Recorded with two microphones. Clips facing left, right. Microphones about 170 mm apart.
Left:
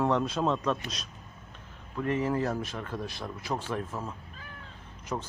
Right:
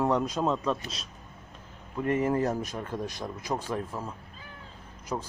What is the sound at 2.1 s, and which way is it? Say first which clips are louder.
Speech: right 2 dB; 50° right (ahead or behind).